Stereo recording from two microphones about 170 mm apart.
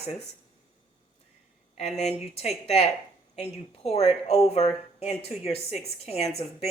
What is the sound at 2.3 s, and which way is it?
Speech, 40° left (ahead or behind).